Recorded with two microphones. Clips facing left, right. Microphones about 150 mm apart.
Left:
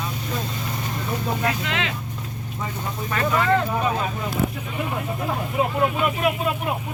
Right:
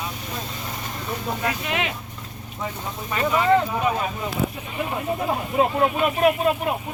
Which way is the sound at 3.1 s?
15° right (ahead or behind).